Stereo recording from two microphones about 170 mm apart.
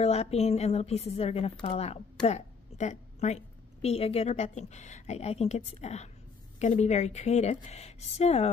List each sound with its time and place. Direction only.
0.0 s speech: 35° left (ahead or behind)